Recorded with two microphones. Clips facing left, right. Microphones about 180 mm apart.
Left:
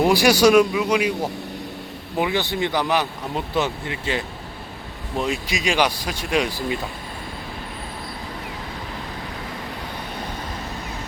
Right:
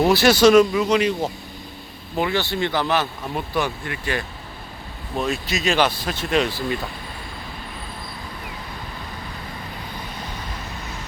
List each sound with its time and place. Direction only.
0.0 s speech: 15° left (ahead or behind)